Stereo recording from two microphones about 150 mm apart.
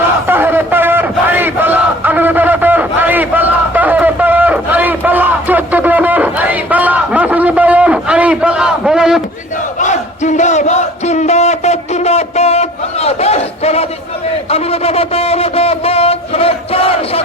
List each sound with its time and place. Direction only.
0.3 s crowd: 15° right (ahead or behind)
9.8 s battle cry: 55° left (ahead or behind)
14.5 s a sound: 40° left (ahead or behind)